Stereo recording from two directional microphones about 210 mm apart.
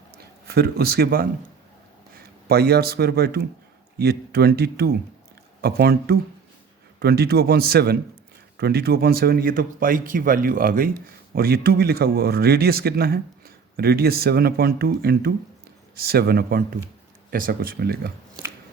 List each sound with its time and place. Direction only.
0.2 s a man's voice: 50° right (ahead or behind)